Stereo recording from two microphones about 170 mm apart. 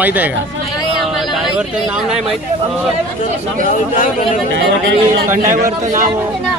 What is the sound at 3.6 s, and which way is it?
Speech, 50° left (ahead or behind).